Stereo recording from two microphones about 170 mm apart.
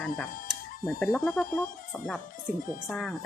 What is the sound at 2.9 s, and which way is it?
Speech, 5° left (ahead or behind).